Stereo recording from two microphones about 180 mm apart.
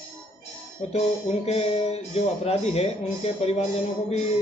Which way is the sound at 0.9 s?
35° left (ahead or behind).